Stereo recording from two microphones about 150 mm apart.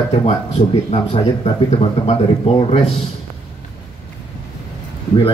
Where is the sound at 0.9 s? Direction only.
35° left (ahead or behind).